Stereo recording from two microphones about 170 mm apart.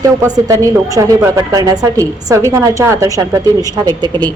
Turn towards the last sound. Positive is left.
turn(degrees=-25)  # may be behind; listen again after turning